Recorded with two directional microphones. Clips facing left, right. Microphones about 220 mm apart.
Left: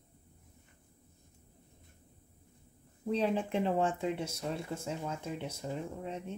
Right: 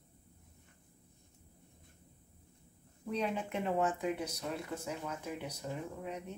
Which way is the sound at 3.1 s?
30° left (ahead or behind).